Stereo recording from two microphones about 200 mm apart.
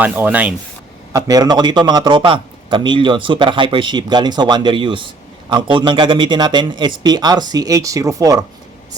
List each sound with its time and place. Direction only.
0.0 s speech: 10° right (ahead or behind)
1.1 s a man's voice: 20° right (ahead or behind)